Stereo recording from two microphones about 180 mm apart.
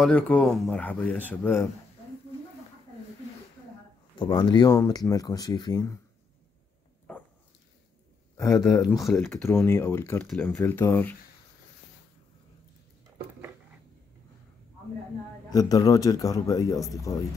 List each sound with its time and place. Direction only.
0.0 s speech: 5° left (ahead or behind)
4.2 s speech: 25° left (ahead or behind)
7.1 s dog: 5° left (ahead or behind)
8.4 s speech: 20° left (ahead or behind)
15.5 s speech: 20° left (ahead or behind)